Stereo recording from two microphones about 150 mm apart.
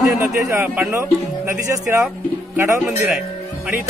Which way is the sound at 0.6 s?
20° right (ahead or behind).